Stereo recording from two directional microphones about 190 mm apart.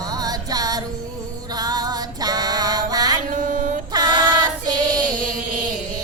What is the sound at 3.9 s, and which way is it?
Child singing, 20° right (ahead or behind).